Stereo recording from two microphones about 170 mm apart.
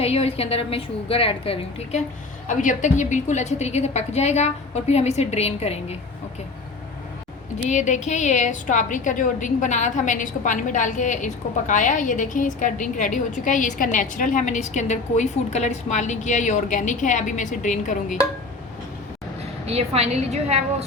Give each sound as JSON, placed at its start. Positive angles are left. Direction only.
{"t": 0.0, "sound": "a woman's voice", "side_deg": 35}
{"t": 2.5, "sound": "a woman's voice", "side_deg": 50}
{"t": 7.7, "sound": "a woman's voice", "side_deg": 45}
{"t": 19.6, "sound": "a woman's voice", "side_deg": -40}